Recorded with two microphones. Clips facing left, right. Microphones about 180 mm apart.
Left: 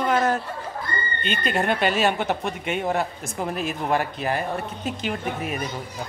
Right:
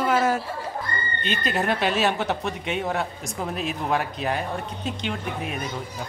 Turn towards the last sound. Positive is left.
turn(degrees=5)  # may be behind; listen again after turning